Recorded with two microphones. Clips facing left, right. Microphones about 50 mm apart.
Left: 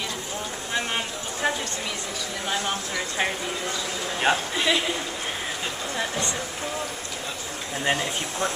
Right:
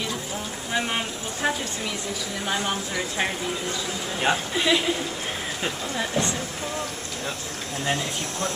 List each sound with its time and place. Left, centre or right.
0.7 s a sound: centre
2.4 s speech: centre
5.9 s speech: centre
7.8 s speech: left